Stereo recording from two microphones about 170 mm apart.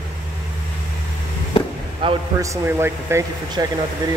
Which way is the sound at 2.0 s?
30° right (ahead or behind).